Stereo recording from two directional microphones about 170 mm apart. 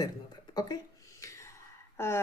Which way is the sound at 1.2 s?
20° left (ahead or behind).